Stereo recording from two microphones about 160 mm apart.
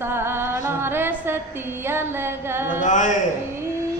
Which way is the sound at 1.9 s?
15° right (ahead or behind).